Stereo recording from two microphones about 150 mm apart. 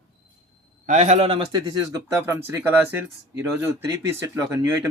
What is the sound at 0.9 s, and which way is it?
Speech, 50° right (ahead or behind).